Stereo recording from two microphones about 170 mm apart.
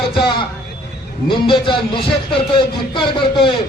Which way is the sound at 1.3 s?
30° left (ahead or behind).